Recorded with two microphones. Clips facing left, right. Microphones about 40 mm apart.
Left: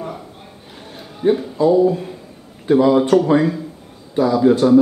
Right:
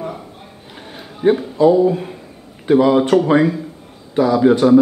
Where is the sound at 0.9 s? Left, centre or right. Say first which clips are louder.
Right 2 dB; right.